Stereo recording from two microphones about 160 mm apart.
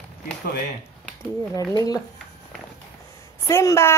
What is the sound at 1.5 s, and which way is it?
Speech, 20° left (ahead or behind).